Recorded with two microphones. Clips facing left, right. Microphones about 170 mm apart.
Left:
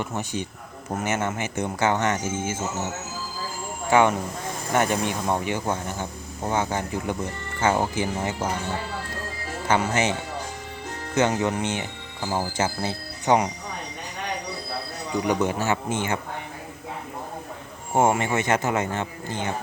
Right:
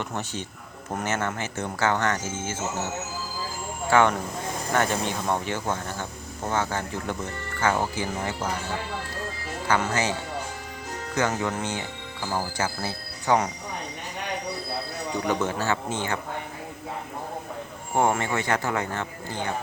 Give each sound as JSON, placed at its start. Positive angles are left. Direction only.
{"t": 0.0, "sound": "speech", "side_deg": 10}
{"t": 9.6, "sound": "speech", "side_deg": 20}
{"t": 15.3, "sound": "speech", "side_deg": 15}
{"t": 17.9, "sound": "speech", "side_deg": 20}